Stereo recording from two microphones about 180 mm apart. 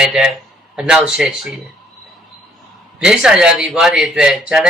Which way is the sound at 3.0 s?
5° right (ahead or behind).